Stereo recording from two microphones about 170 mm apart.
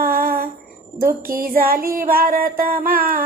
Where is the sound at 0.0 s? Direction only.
60° right (ahead or behind).